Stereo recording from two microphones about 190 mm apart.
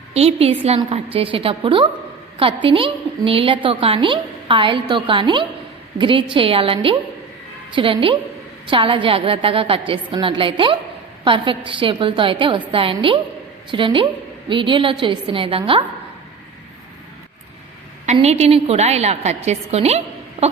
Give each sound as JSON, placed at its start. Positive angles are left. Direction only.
{"t": 0.1, "sound": "a woman's voice", "side_deg": -35}
{"t": 18.0, "sound": "a woman's voice", "side_deg": -35}
{"t": 20.4, "sound": "a sound", "side_deg": -30}